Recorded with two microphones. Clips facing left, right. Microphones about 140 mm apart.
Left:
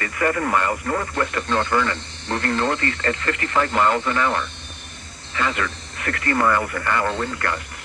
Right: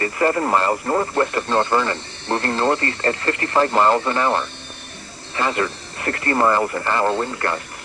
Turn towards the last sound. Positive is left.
turn(degrees=-30)  # may be behind; listen again after turning